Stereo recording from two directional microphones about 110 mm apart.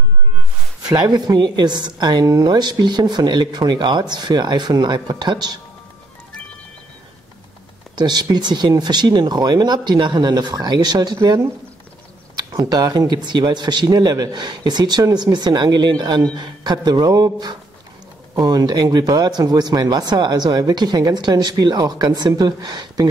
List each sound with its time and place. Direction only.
0.9 s a woman's voice: 40° right (ahead or behind)
7.9 s a woman's voice: 40° right (ahead or behind)
12.4 s a woman's voice: 35° right (ahead or behind)